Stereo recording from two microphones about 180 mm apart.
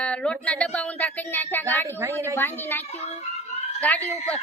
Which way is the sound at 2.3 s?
10° left (ahead or behind).